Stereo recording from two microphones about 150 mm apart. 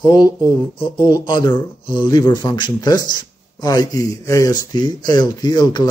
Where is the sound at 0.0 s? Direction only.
25° left (ahead or behind).